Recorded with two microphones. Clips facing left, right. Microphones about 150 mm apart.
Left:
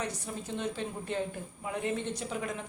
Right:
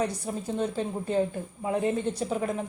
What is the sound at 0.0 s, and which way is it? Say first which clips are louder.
A woman's voice: right 7 dB; 35° right (ahead or behind).